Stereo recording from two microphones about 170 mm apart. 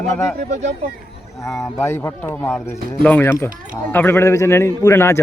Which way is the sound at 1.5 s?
15° left (ahead or behind).